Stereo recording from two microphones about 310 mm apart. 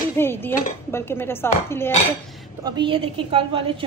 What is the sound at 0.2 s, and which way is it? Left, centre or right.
Speech, centre.